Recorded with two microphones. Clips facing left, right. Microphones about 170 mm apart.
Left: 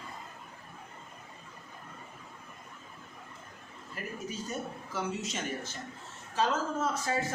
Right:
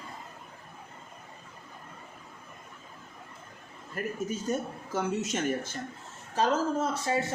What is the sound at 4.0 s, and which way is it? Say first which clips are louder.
A woman's voice: right 6 dB; 45° right (ahead or behind).